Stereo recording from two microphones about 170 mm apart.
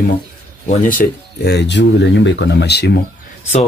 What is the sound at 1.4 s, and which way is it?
Speech, 90° left.